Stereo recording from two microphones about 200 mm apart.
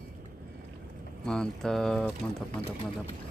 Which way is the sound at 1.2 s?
5° left (ahead or behind).